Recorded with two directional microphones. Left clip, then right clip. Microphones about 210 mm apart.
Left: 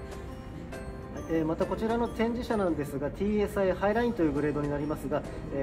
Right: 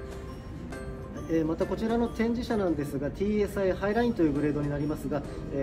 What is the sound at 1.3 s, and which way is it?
Speech, 40° left (ahead or behind).